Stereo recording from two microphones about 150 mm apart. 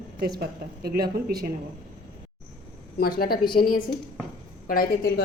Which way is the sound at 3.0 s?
90° left.